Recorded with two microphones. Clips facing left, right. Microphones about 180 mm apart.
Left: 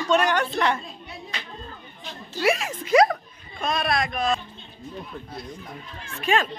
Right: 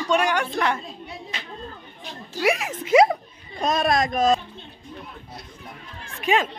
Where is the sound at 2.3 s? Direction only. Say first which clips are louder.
Even; 15° right (ahead or behind).